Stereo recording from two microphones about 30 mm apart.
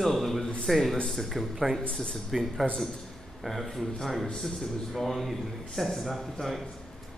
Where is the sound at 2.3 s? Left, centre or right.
Centre.